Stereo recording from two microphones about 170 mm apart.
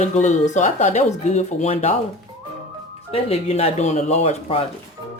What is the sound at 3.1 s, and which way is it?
Speech, 35° left (ahead or behind).